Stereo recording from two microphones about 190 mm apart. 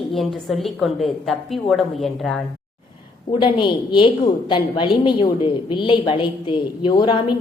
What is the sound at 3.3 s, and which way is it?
A woman's voice, 25° left (ahead or behind).